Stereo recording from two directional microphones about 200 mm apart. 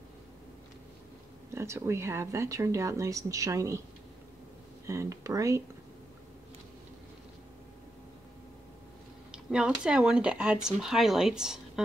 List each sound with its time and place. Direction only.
1.5 s speech: 15° right (ahead or behind)
4.8 s speech: 15° right (ahead or behind)
9.3 s speech: 5° right (ahead or behind)